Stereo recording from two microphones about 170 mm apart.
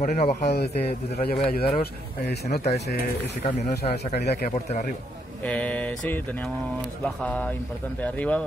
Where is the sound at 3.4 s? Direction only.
70° left (ahead or behind).